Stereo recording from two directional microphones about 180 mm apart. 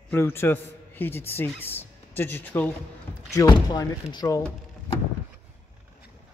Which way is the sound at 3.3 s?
20° left (ahead or behind).